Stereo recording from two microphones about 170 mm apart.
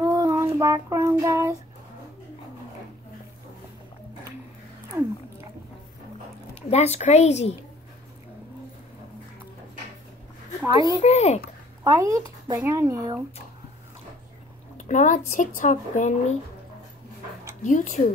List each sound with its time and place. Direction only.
0.0 s child singing: 20° right (ahead or behind)
6.7 s a woman's voice: 40° left (ahead or behind)
10.8 s a woman's voice: 35° left (ahead or behind)
11.8 s speech: 20° right (ahead or behind)
14.8 s speech: 45° left (ahead or behind)
17.6 s speech: 45° left (ahead or behind)